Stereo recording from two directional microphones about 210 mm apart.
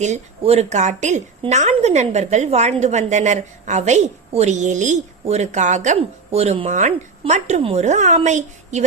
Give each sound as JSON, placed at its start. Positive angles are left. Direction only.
{"t": 0.0, "sound": "a woman's voice", "side_deg": -30}